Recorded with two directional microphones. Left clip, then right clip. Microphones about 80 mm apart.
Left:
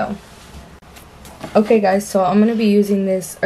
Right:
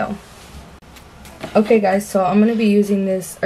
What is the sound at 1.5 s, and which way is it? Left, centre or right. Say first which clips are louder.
Speech: left 1 dB; centre.